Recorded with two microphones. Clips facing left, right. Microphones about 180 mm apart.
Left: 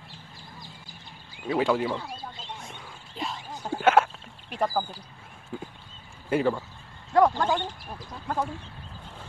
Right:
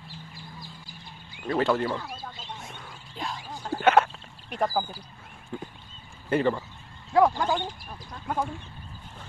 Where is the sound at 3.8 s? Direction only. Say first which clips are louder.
Even; 5° left (ahead or behind).